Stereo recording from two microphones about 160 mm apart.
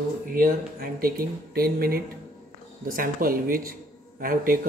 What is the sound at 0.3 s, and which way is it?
A man's voice, 65° right (ahead or behind).